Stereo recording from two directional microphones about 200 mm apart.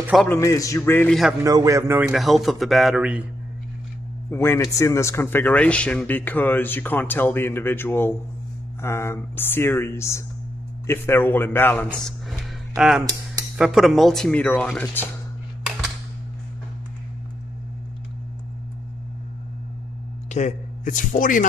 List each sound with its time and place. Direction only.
0.1 s a man's voice: 5° left (ahead or behind)
0.4 s a man's voice: 15° left (ahead or behind)
1.4 s speech: 15° right (ahead or behind)
4.3 s a man's voice: 10° left (ahead or behind)
20.2 s a man's voice: 35° left (ahead or behind)